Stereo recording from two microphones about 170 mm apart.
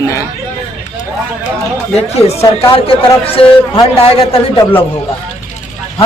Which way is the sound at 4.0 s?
35° left (ahead or behind).